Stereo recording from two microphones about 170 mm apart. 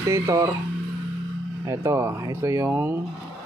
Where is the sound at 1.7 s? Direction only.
15° right (ahead or behind).